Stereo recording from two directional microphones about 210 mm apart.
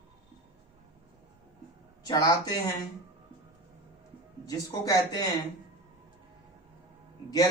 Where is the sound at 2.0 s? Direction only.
15° left (ahead or behind).